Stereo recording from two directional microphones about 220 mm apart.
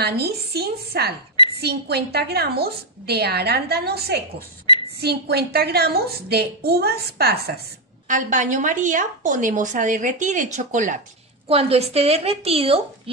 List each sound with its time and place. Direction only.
0.0 s a woman's voice: 45° right (ahead or behind)
4.7 s a sound: 20° left (ahead or behind)
5.0 s a woman's voice: 45° right (ahead or behind)
8.1 s a woman's voice: 35° right (ahead or behind)